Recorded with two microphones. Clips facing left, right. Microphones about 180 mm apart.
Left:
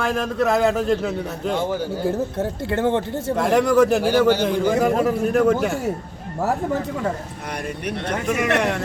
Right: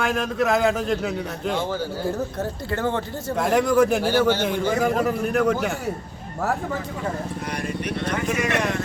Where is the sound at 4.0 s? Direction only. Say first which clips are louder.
Left 3 dB; 15° left (ahead or behind).